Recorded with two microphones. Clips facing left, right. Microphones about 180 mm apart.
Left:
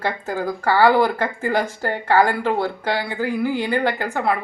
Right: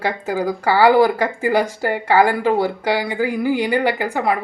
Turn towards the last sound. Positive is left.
turn(degrees=-15)  # may be behind; listen again after turning